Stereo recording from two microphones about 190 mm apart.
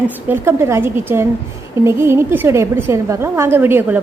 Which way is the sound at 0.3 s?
10° right (ahead or behind).